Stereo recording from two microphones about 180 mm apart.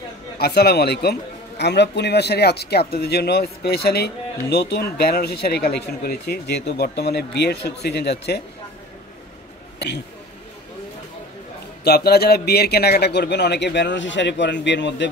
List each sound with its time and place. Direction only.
0.4 s speech: 65° left (ahead or behind)
11.8 s a man's voice: 60° left (ahead or behind); by 15.0 s 80° left